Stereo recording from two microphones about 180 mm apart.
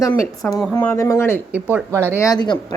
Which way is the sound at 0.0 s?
20° left (ahead or behind).